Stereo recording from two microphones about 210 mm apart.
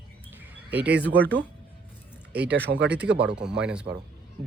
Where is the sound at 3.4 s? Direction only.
5° right (ahead or behind).